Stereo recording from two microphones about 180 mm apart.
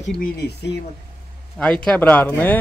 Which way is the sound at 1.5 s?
5° left (ahead or behind).